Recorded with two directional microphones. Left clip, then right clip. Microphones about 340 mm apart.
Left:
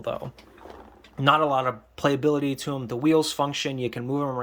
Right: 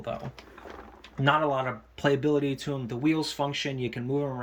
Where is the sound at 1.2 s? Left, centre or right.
Centre.